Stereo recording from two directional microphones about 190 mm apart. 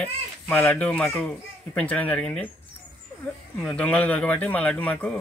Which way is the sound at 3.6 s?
5° left (ahead or behind).